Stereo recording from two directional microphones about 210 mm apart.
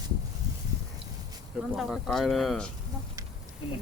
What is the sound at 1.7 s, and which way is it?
Speech, centre (ahead or behind).